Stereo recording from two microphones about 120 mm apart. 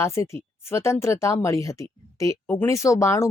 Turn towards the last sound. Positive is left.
turn(degrees=25)  # may be behind; listen again after turning